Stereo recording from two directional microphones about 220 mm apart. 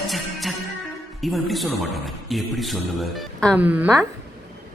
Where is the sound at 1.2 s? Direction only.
Centre (ahead or behind).